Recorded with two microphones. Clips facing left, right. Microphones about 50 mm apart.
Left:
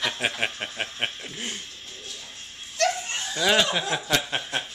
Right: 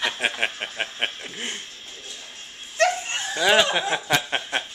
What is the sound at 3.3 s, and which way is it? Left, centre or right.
Chuckle, centre.